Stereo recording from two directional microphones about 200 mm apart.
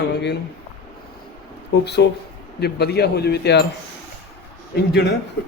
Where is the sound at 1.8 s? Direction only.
55° left (ahead or behind).